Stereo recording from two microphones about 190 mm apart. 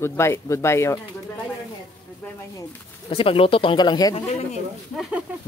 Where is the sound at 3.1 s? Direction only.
30° left (ahead or behind).